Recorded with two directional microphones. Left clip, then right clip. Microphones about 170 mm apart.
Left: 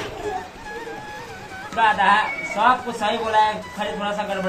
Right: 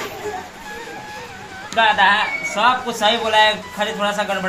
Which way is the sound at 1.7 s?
40° right (ahead or behind).